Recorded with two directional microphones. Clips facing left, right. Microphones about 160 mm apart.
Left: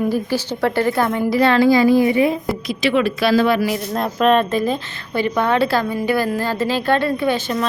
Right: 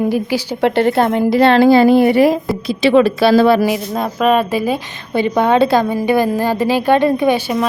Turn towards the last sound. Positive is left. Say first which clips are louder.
# right 5 dB
turn(degrees=-10)  # may be behind; listen again after turning